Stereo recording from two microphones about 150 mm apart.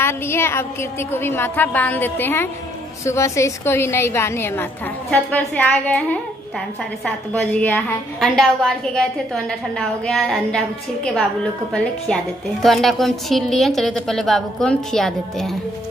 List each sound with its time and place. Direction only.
0.0 s a woman's voice: 15° left (ahead or behind)